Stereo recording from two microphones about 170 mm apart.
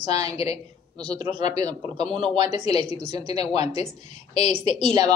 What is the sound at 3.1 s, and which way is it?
Speech, 35° left (ahead or behind).